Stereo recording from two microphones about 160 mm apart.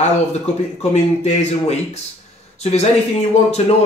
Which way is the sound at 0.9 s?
45° left (ahead or behind).